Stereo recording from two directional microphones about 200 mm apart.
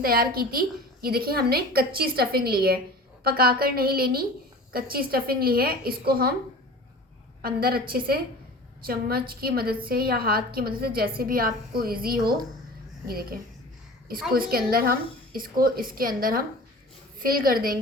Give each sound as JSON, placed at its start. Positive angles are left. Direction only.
{"t": 0.0, "sound": "a woman's voice", "side_deg": -45}
{"t": 7.4, "sound": "a woman's voice", "side_deg": -50}
{"t": 14.3, "sound": "a woman's voice", "side_deg": -45}